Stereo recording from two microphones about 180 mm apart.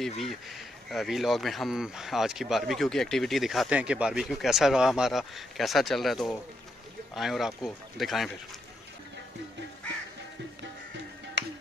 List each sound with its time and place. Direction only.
0.8 s speech: centre (ahead or behind)
11.4 s music: 70° right (ahead or behind)